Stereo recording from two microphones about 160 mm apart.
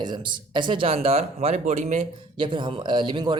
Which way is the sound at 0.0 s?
30° right (ahead or behind).